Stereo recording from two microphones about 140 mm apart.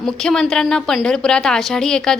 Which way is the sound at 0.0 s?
5° left (ahead or behind).